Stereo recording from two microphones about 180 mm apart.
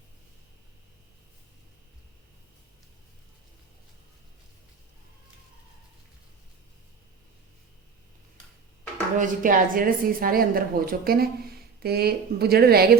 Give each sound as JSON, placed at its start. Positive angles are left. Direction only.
{"t": 9.1, "sound": "a woman's voice", "side_deg": -45}